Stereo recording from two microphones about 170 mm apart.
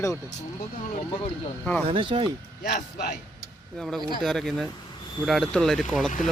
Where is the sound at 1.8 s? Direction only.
30° right (ahead or behind).